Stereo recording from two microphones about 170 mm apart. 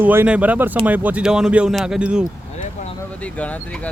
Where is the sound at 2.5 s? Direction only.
40° left (ahead or behind).